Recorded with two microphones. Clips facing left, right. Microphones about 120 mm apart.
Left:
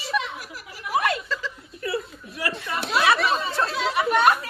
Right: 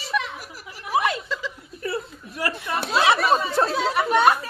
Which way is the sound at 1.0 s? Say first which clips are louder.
Even; 20° right (ahead or behind).